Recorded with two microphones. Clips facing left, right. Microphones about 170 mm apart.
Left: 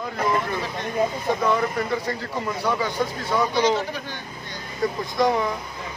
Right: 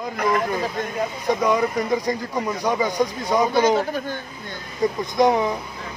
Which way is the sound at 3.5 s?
50° right (ahead or behind).